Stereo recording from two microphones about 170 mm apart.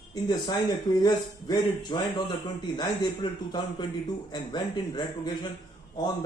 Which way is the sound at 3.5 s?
25° left (ahead or behind).